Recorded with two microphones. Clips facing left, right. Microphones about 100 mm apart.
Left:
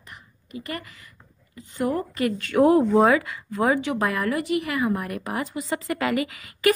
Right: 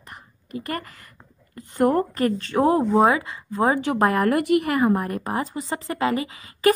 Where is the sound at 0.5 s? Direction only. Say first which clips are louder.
Right 4 dB; 40° right (ahead or behind).